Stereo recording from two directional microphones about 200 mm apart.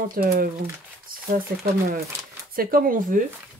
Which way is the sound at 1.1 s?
45° right (ahead or behind).